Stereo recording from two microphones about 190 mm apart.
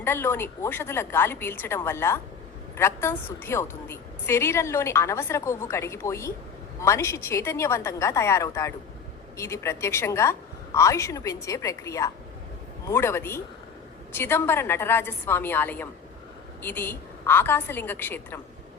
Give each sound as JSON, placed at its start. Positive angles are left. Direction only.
{"t": 0.0, "sound": "a woman's voice", "side_deg": 10}